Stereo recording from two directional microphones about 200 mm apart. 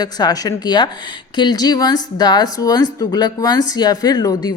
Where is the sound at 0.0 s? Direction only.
20° left (ahead or behind).